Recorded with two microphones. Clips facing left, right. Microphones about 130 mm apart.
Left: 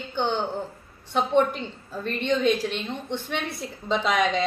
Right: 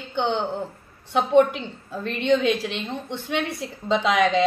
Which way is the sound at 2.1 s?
15° right (ahead or behind).